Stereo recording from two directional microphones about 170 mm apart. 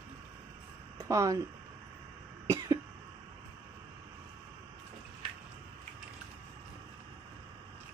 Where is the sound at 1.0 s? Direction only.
20° right (ahead or behind).